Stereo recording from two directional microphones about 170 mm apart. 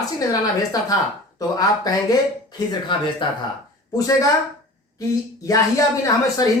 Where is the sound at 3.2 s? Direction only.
30° left (ahead or behind).